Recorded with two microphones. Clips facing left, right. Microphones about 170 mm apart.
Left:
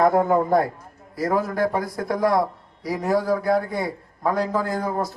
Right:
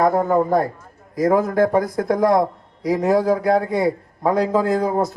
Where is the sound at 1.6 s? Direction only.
45° right (ahead or behind).